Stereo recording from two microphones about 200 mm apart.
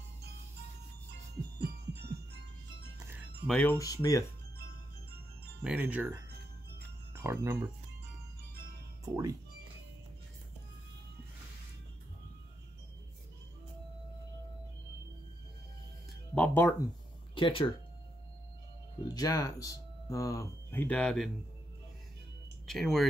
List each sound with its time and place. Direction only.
1.6 s music: 55° right (ahead or behind)
3.4 s speech: 10° left (ahead or behind)
5.6 s speech: 5° right (ahead or behind)
9.0 s speech: 15° right (ahead or behind)
16.3 s speech: 10° left (ahead or behind)
17.4 s speech: 25° left (ahead or behind)
19.0 s speech: 20° left (ahead or behind)
22.7 s speech: centre (ahead or behind)